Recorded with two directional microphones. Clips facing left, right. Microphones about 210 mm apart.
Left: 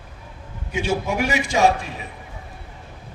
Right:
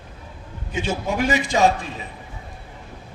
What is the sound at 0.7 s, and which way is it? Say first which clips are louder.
Speech: left 1 dB; 15° left (ahead or behind).